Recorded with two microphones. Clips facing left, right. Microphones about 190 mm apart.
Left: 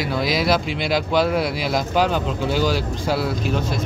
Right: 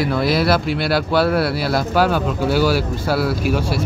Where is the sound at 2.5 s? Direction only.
10° right (ahead or behind).